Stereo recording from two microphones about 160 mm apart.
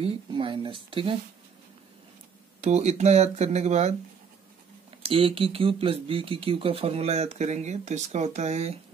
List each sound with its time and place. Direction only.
0.0 s speech: 30° right (ahead or behind)
2.6 s speech: 45° right (ahead or behind)
5.0 s speech: 35° right (ahead or behind)